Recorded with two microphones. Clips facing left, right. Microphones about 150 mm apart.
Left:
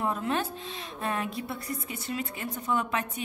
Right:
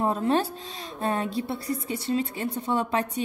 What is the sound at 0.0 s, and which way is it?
Speech, 35° right (ahead or behind).